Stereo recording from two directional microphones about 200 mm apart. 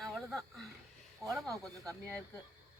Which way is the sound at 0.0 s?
Centre (ahead or behind).